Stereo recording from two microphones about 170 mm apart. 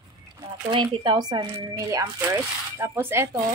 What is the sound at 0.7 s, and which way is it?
A woman's voice, 30° right (ahead or behind).